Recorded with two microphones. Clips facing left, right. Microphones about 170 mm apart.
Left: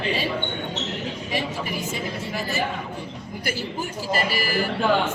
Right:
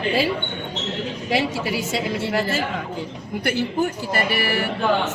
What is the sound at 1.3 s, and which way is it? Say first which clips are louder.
A woman's voice: right 7 dB; 85° right.